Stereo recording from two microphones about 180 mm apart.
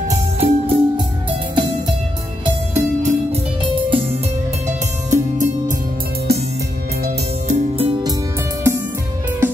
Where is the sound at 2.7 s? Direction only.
35° right (ahead or behind).